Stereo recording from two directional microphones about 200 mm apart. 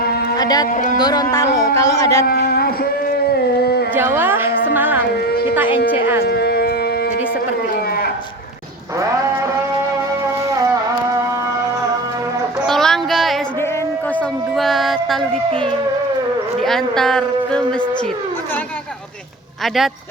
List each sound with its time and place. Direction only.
0.3 s speech: 20° left (ahead or behind)
0.7 s speech: 40° left (ahead or behind)
0.9 s speech: 20° left (ahead or behind)
2.2 s a sound: 50° left (ahead or behind)
3.9 s speech: 10° right (ahead or behind)
4.7 s music: 10° right (ahead or behind)
5.5 s speech: 10° right (ahead or behind)
6.2 s a sound: 55° left (ahead or behind)
12.6 s music: centre (ahead or behind)
16.6 s a sound: centre (ahead or behind)
19.6 s a man's voice: centre (ahead or behind)